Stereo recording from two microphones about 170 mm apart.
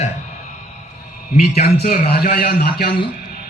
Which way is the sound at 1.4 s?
65° left (ahead or behind).